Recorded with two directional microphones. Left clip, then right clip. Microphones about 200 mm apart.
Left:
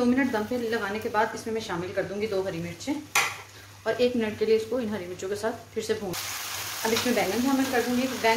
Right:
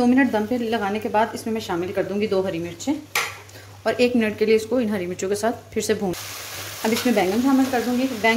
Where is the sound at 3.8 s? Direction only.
40° right (ahead or behind).